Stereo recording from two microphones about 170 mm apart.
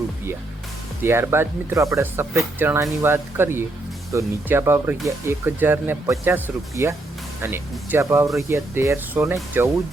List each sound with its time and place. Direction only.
1.0 s speech: 15° right (ahead or behind)